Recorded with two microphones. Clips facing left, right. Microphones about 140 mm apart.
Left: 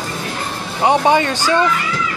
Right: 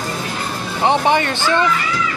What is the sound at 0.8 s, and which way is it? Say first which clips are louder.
Speech: left 2 dB; 15° left (ahead or behind).